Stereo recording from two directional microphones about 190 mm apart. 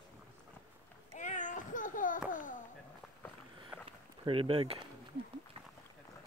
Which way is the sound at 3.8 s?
30° right (ahead or behind).